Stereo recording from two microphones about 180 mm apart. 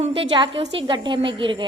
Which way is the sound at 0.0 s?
35° right (ahead or behind).